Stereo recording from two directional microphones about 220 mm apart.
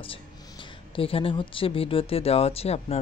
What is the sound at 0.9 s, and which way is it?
Speech, 25° left (ahead or behind).